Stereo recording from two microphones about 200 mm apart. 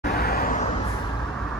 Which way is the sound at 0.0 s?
50° left (ahead or behind).